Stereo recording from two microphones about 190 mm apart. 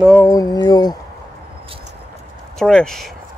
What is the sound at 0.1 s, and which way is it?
Speech, 15° left (ahead or behind).